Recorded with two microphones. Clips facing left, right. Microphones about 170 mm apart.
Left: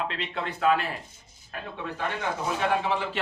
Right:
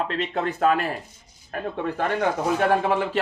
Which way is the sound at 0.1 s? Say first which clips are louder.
Right 7 dB; 45° right (ahead or behind).